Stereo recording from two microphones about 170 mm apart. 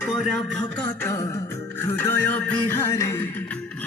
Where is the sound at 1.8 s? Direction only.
15° left (ahead or behind).